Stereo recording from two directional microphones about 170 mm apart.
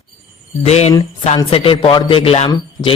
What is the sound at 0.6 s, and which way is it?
Speech, 40° left (ahead or behind).